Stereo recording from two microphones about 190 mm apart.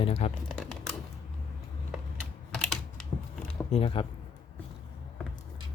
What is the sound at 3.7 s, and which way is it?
Speech, 30° left (ahead or behind).